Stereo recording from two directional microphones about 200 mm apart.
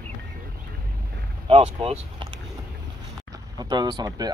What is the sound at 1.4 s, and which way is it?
Speech, 30° right (ahead or behind).